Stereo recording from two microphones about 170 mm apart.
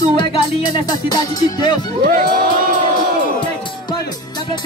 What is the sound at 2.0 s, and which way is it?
Crowd, 55° right (ahead or behind).